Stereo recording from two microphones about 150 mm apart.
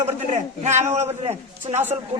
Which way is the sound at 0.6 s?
50° right (ahead or behind).